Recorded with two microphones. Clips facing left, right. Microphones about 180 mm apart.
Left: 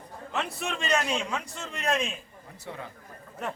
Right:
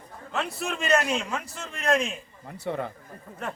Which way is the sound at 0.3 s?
Centre (ahead or behind).